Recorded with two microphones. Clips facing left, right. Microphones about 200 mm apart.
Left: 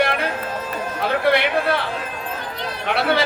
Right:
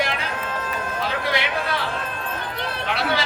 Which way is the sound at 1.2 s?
60° left (ahead or behind).